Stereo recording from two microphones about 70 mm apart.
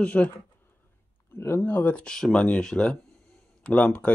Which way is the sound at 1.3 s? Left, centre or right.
Left.